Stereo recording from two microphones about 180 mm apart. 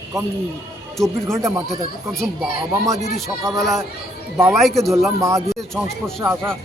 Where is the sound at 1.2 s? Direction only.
15° right (ahead or behind).